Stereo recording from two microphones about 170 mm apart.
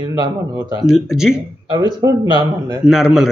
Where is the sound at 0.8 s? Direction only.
5° right (ahead or behind).